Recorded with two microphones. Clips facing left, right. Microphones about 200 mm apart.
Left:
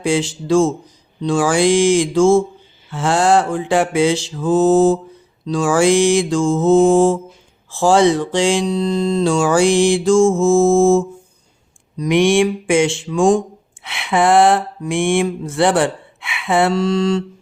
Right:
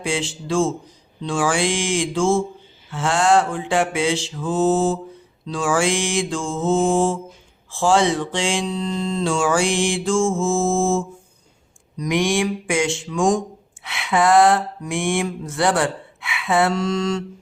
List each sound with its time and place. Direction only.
0.0 s mantra: 40° left (ahead or behind)
11.9 s mantra: 30° left (ahead or behind)